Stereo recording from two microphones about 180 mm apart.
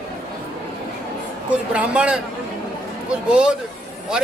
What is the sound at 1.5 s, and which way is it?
Speech, 5° right (ahead or behind).